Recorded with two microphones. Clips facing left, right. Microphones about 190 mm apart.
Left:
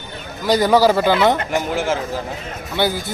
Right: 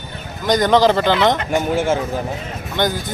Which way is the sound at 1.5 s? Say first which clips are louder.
Right 2 dB; 25° right (ahead or behind).